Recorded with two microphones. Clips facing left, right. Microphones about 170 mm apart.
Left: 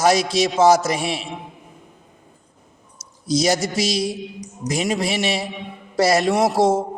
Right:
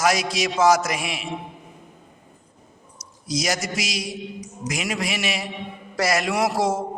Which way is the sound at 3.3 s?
30° left (ahead or behind).